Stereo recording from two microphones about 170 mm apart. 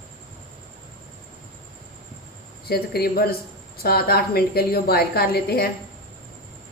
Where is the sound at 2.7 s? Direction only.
65° left (ahead or behind).